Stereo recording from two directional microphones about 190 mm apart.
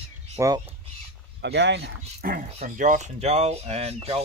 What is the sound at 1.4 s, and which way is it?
Speech, 65° right (ahead or behind).